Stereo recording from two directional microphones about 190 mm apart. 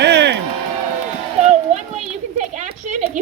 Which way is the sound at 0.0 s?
65° right (ahead or behind).